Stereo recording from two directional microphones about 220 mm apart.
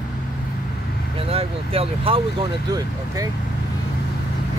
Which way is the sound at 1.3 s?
25° right (ahead or behind).